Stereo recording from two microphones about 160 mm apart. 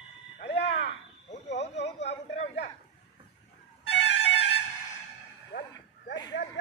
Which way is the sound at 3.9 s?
90° left.